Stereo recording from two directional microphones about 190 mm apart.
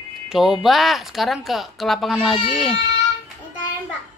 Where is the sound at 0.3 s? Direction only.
Centre (ahead or behind).